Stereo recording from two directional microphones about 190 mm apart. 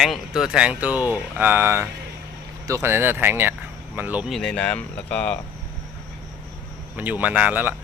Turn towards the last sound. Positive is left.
turn(degrees=-10)  # may be behind; listen again after turning